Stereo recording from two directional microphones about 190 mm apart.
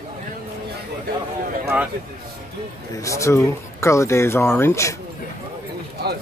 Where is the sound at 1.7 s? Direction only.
5° right (ahead or behind).